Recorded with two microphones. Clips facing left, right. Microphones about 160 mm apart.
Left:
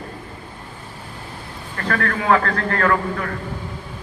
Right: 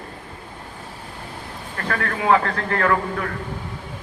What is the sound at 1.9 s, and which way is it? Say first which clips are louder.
A man's voice: left 1 dB; 10° right (ahead or behind).